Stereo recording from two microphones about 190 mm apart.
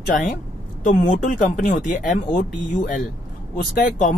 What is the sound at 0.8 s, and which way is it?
Speech, 45° left (ahead or behind).